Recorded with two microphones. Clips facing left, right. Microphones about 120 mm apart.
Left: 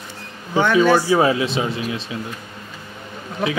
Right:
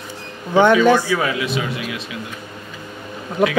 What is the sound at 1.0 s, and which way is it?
Speech, 30° left (ahead or behind).